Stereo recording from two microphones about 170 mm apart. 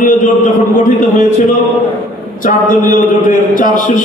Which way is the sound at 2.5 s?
50° left (ahead or behind).